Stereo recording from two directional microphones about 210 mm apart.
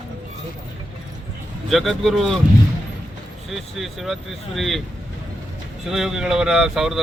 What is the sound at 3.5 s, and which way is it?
Speech, centre (ahead or behind).